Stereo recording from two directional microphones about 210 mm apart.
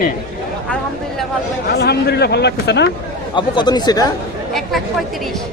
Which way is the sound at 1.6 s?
50° left (ahead or behind).